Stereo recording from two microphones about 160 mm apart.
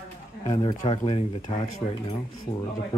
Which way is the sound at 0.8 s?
35° left (ahead or behind).